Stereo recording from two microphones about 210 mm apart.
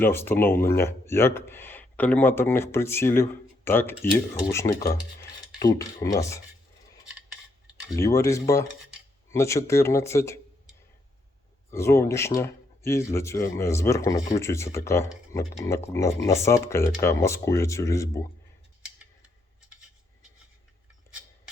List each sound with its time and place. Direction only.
0.0 s speech: 10° left (ahead or behind)
7.9 s speech: 15° left (ahead or behind)
11.7 s speech: 10° left (ahead or behind)